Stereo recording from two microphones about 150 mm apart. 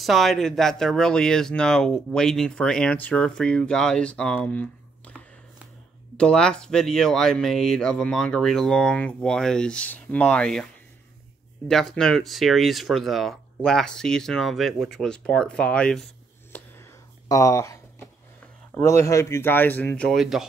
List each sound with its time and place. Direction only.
0.0 s speech: centre (ahead or behind)
6.1 s speech: 5° left (ahead or behind)
17.3 s a sound: 20° left (ahead or behind)
18.8 s speech: 20° left (ahead or behind); by 20.4 s centre (ahead or behind)